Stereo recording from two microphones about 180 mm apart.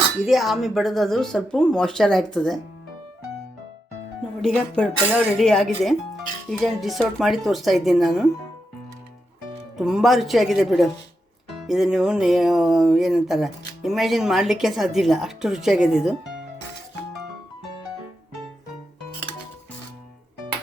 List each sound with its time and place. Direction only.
0.3 s speech: centre (ahead or behind)
4.4 s speech: centre (ahead or behind)
9.7 s speech: centre (ahead or behind)